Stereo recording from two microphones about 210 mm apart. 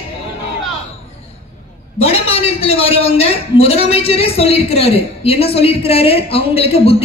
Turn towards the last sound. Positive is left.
turn(degrees=30)  # may be behind; listen again after turning